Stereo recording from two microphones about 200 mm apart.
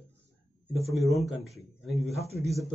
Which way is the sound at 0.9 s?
Centre (ahead or behind).